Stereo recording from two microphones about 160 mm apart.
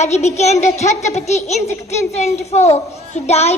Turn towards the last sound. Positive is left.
turn(degrees=40)  # may be behind; listen again after turning